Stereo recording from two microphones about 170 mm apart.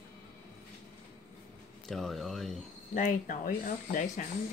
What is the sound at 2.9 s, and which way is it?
Speech, 55° left (ahead or behind).